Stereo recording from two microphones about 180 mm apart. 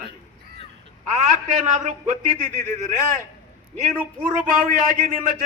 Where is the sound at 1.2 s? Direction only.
40° right (ahead or behind).